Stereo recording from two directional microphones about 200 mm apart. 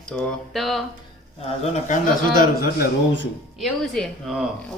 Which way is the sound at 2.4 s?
50° left (ahead or behind).